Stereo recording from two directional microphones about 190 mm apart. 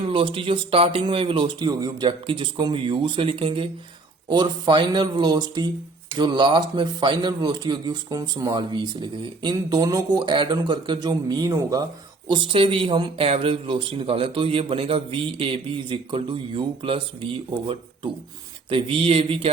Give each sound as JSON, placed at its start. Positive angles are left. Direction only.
{"t": 0.1, "sound": "a man's voice", "side_deg": -25}